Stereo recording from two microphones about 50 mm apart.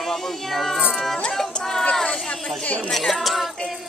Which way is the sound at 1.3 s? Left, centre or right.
Centre.